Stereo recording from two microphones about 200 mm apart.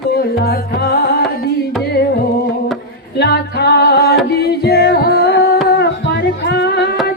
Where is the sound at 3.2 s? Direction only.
55° left (ahead or behind).